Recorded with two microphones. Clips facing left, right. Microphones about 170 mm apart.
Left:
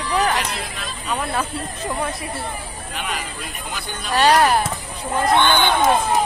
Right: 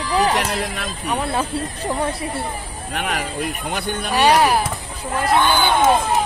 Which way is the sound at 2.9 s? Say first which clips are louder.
Right 6 dB; 60° right (ahead or behind).